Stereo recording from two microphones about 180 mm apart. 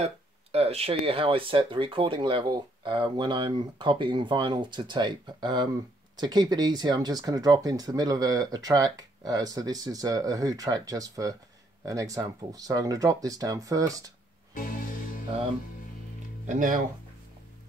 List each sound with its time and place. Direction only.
0.0 s speech: 35° right (ahead or behind); by 14.1 s 20° right (ahead or behind)
14.5 s music: 50° left (ahead or behind)
16.4 s speech: 45° right (ahead or behind)